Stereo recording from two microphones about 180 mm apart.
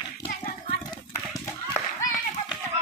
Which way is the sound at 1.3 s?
20° left (ahead or behind).